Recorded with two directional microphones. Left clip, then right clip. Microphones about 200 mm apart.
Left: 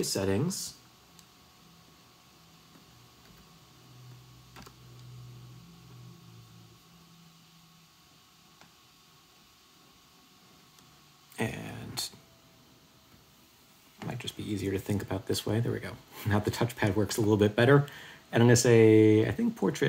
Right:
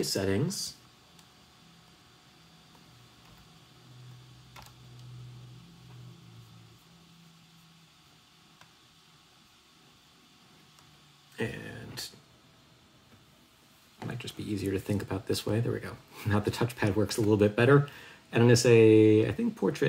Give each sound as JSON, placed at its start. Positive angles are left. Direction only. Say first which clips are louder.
{"t": 0.0, "sound": "speech", "louder": "even", "side_deg": 10}
{"t": 11.3, "sound": "a sound", "louder": "left 1 dB", "side_deg": 30}
{"t": 13.9, "sound": "speech", "louder": "left 1 dB", "side_deg": 15}